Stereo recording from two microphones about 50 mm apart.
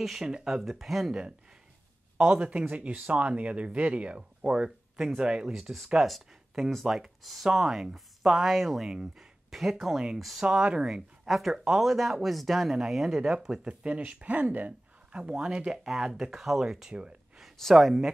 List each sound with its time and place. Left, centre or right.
0.0 s speech: centre
2.1 s speech: right
5.5 s speech: centre
8.8 s speech: centre
10.4 s speech: centre
11.2 s speech: centre
12.7 s speech: centre; by 14.7 s right
15.1 s speech: centre
17.6 s speech: centre